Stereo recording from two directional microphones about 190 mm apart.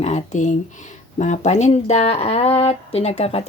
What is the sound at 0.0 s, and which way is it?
Speech, 40° left (ahead or behind).